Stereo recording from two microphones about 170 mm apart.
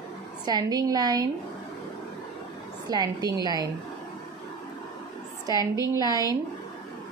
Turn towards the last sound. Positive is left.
turn(degrees=-20)  # may be behind; listen again after turning